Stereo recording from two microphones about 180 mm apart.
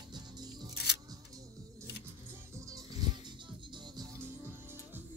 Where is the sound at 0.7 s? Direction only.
70° left (ahead or behind).